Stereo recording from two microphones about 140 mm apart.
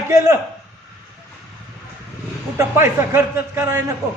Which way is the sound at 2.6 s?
20° right (ahead or behind).